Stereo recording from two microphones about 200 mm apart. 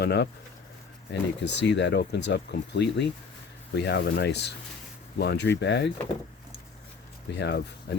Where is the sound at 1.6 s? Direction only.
60° left (ahead or behind).